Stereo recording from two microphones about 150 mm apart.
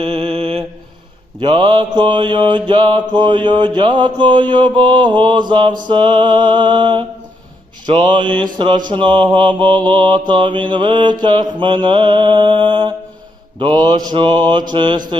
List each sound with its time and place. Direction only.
0.0 s mantra: 40° right (ahead or behind)